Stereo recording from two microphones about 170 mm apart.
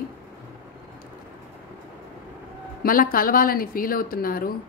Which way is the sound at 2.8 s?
55° left (ahead or behind).